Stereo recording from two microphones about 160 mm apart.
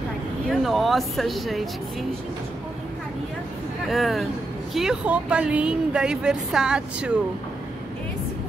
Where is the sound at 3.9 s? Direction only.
Centre (ahead or behind).